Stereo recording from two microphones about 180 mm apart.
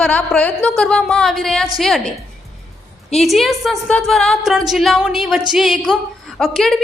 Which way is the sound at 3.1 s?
Centre (ahead or behind).